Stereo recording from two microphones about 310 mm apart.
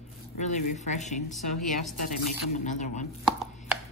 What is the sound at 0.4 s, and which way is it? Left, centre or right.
Speech, left.